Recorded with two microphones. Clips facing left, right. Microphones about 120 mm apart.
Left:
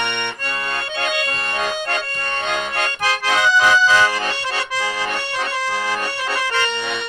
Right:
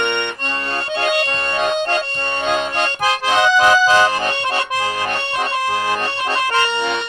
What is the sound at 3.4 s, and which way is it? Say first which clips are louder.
Accordion: right 2 dB; 55° right (ahead or behind).